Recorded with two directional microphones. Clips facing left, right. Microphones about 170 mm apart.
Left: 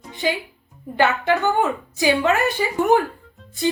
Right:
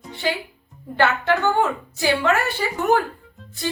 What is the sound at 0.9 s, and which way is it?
A woman's voice, 15° left (ahead or behind).